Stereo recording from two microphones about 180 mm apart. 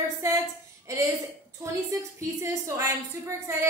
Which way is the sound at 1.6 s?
15° right (ahead or behind).